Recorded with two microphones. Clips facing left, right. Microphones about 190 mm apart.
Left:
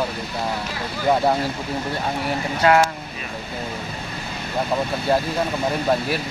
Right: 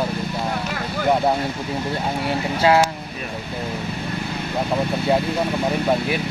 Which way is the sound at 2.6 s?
25° right (ahead or behind).